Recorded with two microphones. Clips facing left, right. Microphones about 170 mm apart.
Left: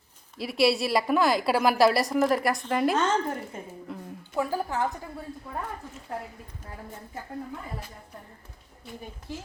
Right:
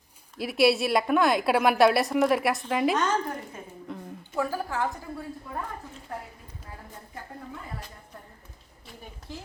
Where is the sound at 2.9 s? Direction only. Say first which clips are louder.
Left 1 dB; 25° left (ahead or behind).